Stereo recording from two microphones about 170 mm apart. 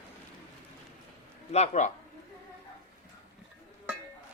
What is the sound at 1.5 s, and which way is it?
Speech, 40° left (ahead or behind).